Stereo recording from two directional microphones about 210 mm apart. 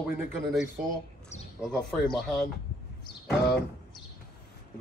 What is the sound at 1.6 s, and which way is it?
Speech, centre (ahead or behind).